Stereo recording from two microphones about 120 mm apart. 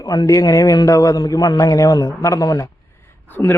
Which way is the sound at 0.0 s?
30° left (ahead or behind).